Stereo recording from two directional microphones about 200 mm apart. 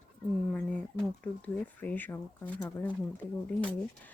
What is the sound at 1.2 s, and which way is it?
Speech, 5° left (ahead or behind).